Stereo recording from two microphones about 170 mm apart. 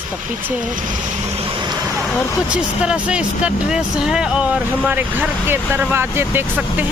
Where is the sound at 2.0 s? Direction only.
Centre (ahead or behind).